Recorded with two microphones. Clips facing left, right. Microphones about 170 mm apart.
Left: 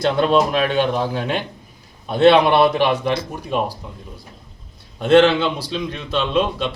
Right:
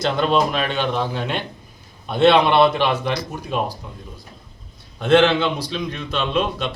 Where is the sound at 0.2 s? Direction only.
5° left (ahead or behind).